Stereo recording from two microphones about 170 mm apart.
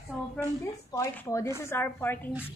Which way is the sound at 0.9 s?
15° left (ahead or behind).